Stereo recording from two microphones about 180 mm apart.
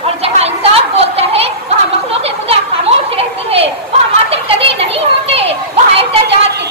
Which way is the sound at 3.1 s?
35° right (ahead or behind).